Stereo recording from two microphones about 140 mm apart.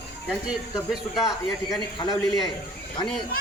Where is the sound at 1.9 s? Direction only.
30° left (ahead or behind).